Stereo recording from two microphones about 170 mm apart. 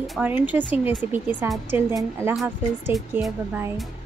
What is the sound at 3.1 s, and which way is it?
Speech, 10° right (ahead or behind).